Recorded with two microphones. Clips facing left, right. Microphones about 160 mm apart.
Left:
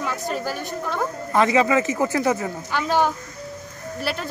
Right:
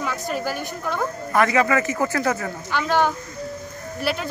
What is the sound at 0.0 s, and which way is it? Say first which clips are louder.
A woman's voice: even; centre (ahead or behind).